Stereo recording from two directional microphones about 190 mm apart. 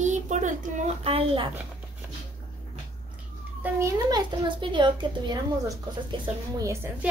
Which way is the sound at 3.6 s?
15° right (ahead or behind).